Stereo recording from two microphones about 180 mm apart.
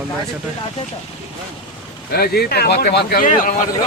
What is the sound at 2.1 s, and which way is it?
Speech, 60° left (ahead or behind).